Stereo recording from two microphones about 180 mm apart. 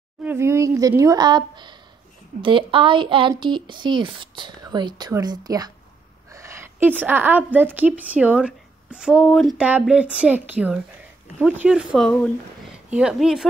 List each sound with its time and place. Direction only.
0.2 s a woman's voice: 15° right (ahead or behind)